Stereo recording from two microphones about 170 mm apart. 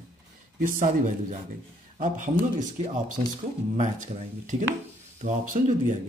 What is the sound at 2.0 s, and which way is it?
Speech, 50° right (ahead or behind).